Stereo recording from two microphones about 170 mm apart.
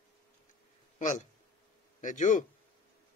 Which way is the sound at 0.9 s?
45° left (ahead or behind).